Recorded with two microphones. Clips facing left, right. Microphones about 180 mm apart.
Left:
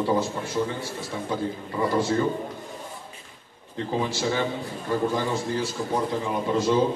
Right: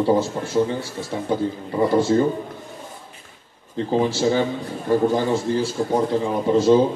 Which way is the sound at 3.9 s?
30° right (ahead or behind).